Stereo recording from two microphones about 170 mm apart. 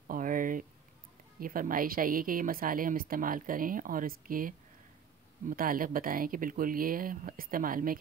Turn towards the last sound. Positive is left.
turn(degrees=-55)  # may be behind; listen again after turning